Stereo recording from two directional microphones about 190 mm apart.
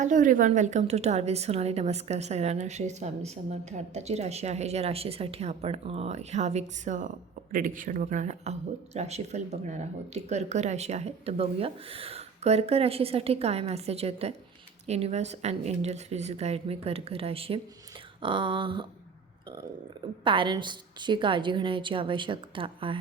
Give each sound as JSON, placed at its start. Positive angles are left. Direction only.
{"t": 0.0, "sound": "a woman's voice", "side_deg": -40}
{"t": 20.2, "sound": "a woman's voice", "side_deg": -25}